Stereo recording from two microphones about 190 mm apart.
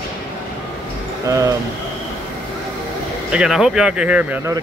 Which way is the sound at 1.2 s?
15° right (ahead or behind).